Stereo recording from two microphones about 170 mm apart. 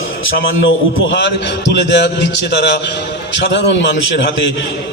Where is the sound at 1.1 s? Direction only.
90° left.